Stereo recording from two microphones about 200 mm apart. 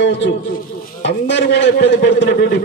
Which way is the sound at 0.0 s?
65° left (ahead or behind).